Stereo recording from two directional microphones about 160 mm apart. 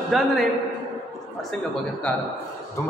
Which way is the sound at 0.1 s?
Centre (ahead or behind).